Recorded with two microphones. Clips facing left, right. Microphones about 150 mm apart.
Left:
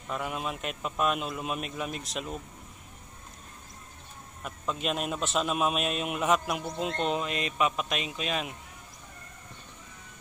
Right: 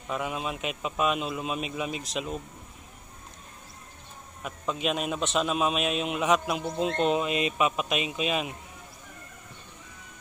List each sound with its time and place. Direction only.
0.1 s a man's voice: 5° right (ahead or behind)
4.4 s a man's voice: centre (ahead or behind)